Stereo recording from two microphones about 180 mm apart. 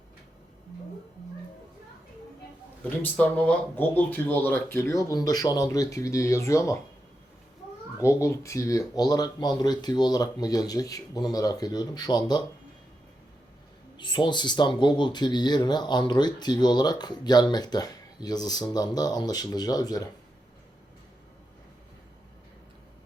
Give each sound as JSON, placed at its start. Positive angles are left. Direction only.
{"t": 3.0, "sound": "speech", "side_deg": 5}
{"t": 8.0, "sound": "speech", "side_deg": 15}
{"t": 13.9, "sound": "speech", "side_deg": 25}